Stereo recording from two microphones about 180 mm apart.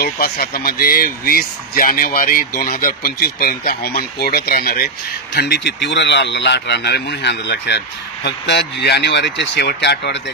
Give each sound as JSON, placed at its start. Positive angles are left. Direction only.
{"t": 0.0, "sound": "speech", "side_deg": 60}